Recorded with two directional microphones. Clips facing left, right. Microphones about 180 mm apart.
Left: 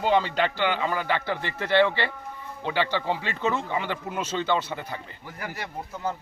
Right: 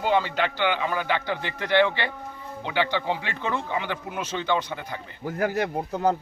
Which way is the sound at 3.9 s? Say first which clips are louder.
Left 1 dB; 10° right (ahead or behind).